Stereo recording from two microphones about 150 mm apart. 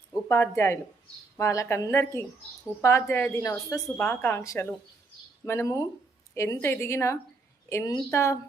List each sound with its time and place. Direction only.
0.3 s a woman's voice: 20° left (ahead or behind)